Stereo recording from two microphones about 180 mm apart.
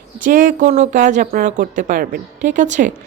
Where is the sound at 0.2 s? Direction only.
50° right (ahead or behind).